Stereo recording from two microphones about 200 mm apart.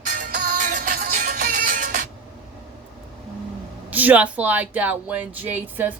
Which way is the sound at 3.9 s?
10° right (ahead or behind).